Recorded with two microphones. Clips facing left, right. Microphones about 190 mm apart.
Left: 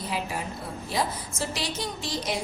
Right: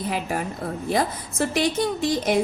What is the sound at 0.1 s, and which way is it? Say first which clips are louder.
A woman's voice: right 3 dB; 55° right (ahead or behind).